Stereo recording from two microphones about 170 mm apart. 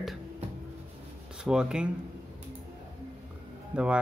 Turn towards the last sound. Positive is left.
turn(degrees=-5)  # may be behind; listen again after turning